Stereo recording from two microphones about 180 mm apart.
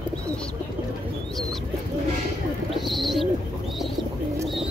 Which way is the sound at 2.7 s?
Centre (ahead or behind).